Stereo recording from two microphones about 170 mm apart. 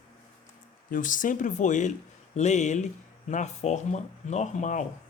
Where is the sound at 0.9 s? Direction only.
50° left (ahead or behind).